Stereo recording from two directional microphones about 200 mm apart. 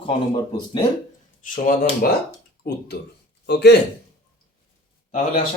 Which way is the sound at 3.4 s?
55° left (ahead or behind).